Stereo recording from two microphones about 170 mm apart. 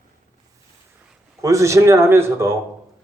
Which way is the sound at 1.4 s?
15° right (ahead or behind).